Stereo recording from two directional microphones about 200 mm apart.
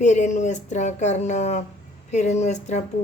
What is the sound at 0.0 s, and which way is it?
Speech, 35° left (ahead or behind).